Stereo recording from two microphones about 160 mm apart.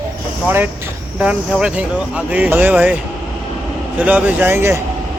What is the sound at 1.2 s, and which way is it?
Speech, 5° right (ahead or behind).